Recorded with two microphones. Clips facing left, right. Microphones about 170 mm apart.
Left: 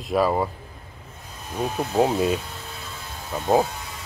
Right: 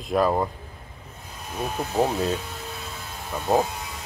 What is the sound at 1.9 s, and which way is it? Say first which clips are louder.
Speech: left 3 dB; 15° left (ahead or behind).